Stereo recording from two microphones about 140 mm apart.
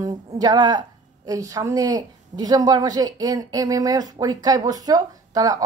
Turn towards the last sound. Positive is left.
turn(degrees=-25)  # may be behind; listen again after turning